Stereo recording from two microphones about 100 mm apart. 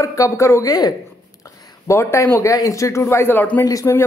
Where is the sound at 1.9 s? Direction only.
30° left (ahead or behind).